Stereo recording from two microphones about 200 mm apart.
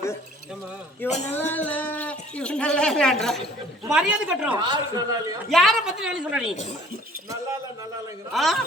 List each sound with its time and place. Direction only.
1.3 s a sound: 10° left (ahead or behind)
3.8 s a woman's voice: 5° right (ahead or behind)
4.6 s a man's voice: 20° right (ahead or behind)
5.5 s a woman's voice: centre (ahead or behind)
8.3 s a woman's voice: centre (ahead or behind)